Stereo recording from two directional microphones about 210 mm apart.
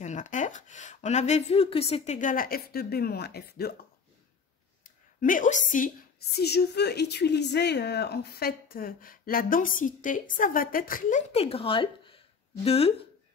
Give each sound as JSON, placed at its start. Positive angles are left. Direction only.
{"t": 0.0, "sound": "speech", "side_deg": 35}
{"t": 4.8, "sound": "a woman's voice", "side_deg": 40}